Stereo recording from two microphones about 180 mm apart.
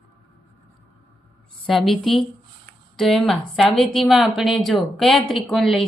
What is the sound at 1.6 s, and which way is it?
A woman's voice, centre (ahead or behind).